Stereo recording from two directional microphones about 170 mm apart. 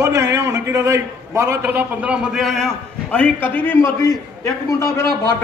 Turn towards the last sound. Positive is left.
turn(degrees=15)  # may be behind; listen again after turning